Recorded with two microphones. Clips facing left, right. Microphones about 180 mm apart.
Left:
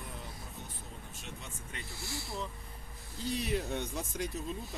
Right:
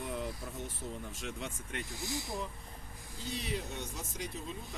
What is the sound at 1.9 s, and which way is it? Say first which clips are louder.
Speech: right 1 dB; 15° right (ahead or behind).